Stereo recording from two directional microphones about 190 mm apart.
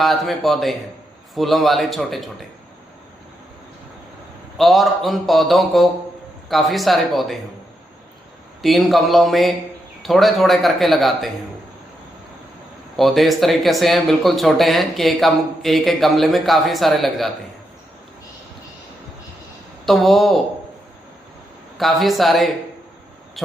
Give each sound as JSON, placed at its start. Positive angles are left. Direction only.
{"t": 0.0, "sound": "speech", "side_deg": 0}
{"t": 4.5, "sound": "speech", "side_deg": 0}
{"t": 8.6, "sound": "speech", "side_deg": 0}
{"t": 13.0, "sound": "speech", "side_deg": 0}
{"t": 19.8, "sound": "speech", "side_deg": 0}
{"t": 21.8, "sound": "speech", "side_deg": 0}